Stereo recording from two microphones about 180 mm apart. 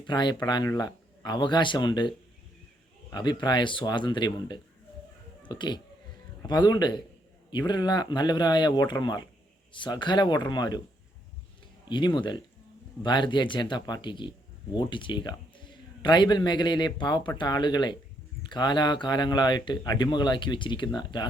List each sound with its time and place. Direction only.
0.0 s speech: 25° left (ahead or behind)
11.9 s speech: 25° left (ahead or behind)